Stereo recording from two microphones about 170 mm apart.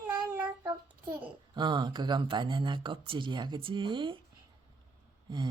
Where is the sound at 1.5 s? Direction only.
25° right (ahead or behind).